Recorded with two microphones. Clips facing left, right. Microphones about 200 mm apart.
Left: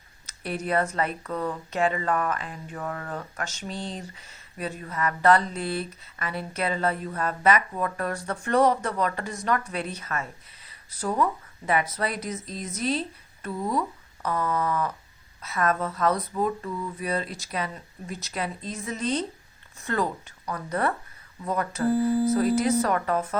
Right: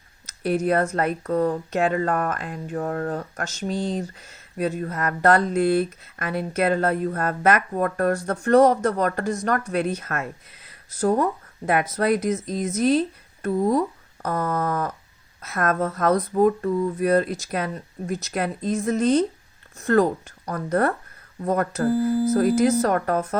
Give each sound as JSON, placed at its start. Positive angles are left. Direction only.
{"t": 0.3, "sound": "speech", "side_deg": -45}